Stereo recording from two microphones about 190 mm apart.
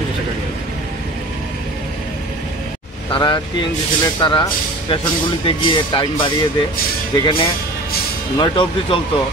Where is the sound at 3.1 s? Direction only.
25° left (ahead or behind).